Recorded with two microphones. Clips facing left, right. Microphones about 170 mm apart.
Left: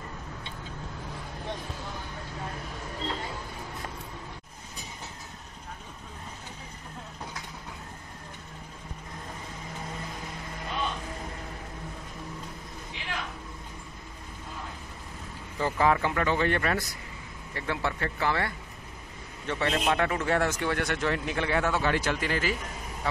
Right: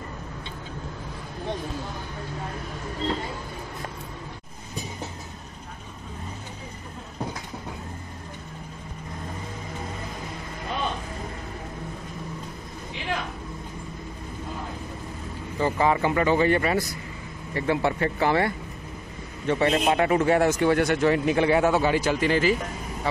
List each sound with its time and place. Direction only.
15.6 s speech: 5° right (ahead or behind)